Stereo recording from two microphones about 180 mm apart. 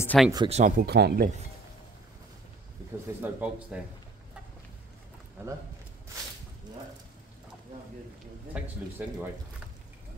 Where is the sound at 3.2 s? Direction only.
10° right (ahead or behind).